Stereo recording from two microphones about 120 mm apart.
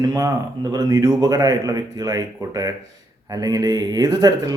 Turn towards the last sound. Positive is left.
turn(degrees=-30)  # may be behind; listen again after turning